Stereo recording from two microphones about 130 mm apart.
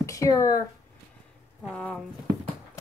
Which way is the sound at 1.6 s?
5° left (ahead or behind).